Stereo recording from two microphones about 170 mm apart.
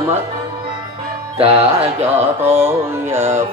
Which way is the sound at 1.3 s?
35° right (ahead or behind).